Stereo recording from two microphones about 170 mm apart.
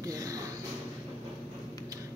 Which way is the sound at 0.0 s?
20° right (ahead or behind).